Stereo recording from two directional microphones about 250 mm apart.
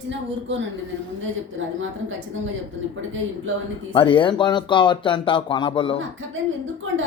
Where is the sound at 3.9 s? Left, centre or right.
Centre.